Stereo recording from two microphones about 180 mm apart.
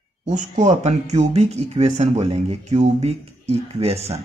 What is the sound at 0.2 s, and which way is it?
Speech, 40° right (ahead or behind).